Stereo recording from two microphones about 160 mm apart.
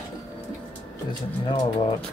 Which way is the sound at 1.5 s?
35° left (ahead or behind).